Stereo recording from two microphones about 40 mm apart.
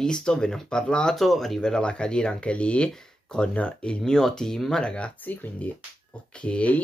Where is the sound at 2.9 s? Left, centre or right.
Centre.